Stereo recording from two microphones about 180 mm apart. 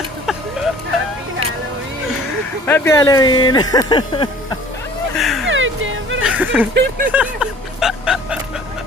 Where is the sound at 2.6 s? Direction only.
15° left (ahead or behind).